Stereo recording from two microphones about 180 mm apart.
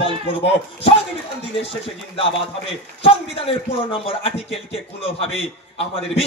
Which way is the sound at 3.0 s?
30° left (ahead or behind).